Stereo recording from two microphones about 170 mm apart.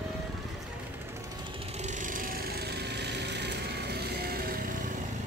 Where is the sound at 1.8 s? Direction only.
45° right (ahead or behind); by 4.9 s 60° right (ahead or behind).